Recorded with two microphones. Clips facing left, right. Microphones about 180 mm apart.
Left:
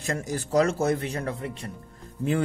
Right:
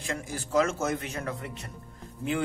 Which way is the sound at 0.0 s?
45° left (ahead or behind).